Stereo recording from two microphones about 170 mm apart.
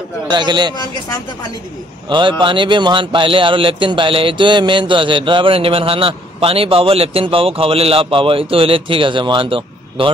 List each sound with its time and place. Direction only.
0.3 s a man's voice: 25° right (ahead or behind)
2.0 s speech: 30° right (ahead or behind)